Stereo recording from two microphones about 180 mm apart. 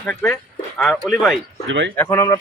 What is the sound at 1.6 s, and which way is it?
Speech, 90° right.